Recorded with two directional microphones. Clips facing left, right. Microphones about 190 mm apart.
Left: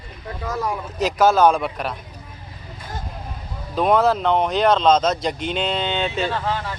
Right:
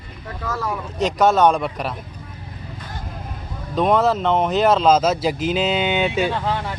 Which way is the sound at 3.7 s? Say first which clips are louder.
Even; centre (ahead or behind).